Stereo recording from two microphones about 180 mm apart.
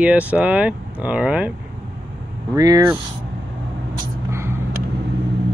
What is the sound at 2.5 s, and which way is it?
Speech, 20° right (ahead or behind).